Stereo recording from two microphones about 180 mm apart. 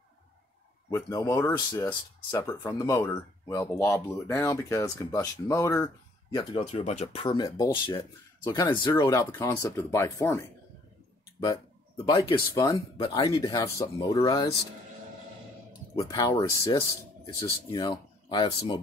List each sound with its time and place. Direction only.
0.8 s speech: 15° left (ahead or behind)
6.6 s speech: 40° left (ahead or behind); by 12.7 s 20° left (ahead or behind)
12.7 s speech: 30° left (ahead or behind)
13.4 s speech: 20° left (ahead or behind)
14.3 s speech: 20° left (ahead or behind)
16.0 s speech: 20° left (ahead or behind)